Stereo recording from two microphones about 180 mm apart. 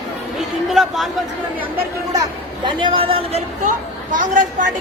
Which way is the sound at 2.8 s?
30° right (ahead or behind).